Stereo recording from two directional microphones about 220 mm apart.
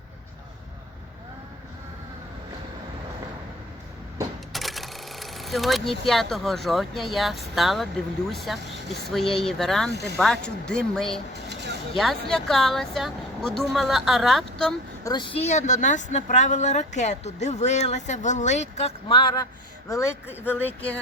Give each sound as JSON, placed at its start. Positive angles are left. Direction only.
{"t": 4.5, "sound": "a sound", "side_deg": 0}
{"t": 6.1, "sound": "speech", "side_deg": 0}
{"t": 9.9, "sound": "speech", "side_deg": -50}
{"t": 10.2, "sound": "speech", "side_deg": 5}
{"t": 11.3, "sound": "a sound", "side_deg": -50}
{"t": 11.9, "sound": "speech", "side_deg": 0}
{"t": 15.0, "sound": "a woman's voice", "side_deg": 20}